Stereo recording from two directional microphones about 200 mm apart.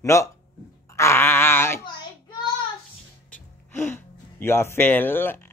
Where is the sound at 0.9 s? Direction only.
15° left (ahead or behind).